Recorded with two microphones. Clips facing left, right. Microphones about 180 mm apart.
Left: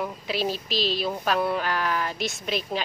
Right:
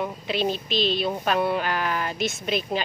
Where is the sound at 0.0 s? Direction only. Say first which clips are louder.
Right 2 dB; 5° left (ahead or behind).